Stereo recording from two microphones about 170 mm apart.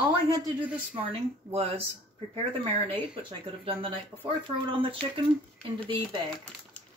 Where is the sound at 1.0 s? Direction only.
35° right (ahead or behind).